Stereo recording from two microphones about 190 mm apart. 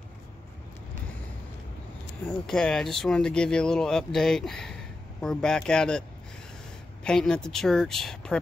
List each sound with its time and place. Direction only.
2.2 s speech: 5° left (ahead or behind)
7.1 s speech: 5° left (ahead or behind)